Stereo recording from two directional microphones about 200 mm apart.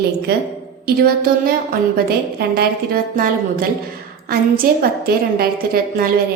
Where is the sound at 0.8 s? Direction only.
50° right (ahead or behind).